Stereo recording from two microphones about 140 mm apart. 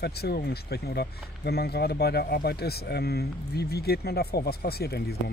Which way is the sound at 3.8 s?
90° left.